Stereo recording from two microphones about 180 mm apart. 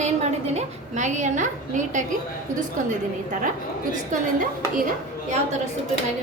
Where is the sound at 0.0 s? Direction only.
40° right (ahead or behind).